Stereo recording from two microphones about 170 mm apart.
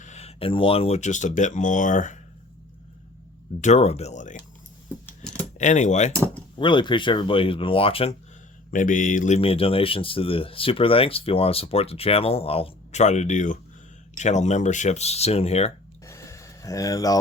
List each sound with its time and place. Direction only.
0.0 s speech: 40° left (ahead or behind)
3.6 s speech: 40° left (ahead or behind)
5.0 s keys jangling: 10° left (ahead or behind)
5.5 s speech: 45° left (ahead or behind)
6.6 s speech: 30° left (ahead or behind)
8.7 s speech: 50° left (ahead or behind)
16.0 s a sound: 15° left (ahead or behind)